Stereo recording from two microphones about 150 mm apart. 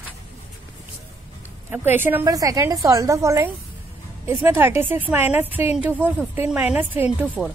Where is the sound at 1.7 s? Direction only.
15° right (ahead or behind).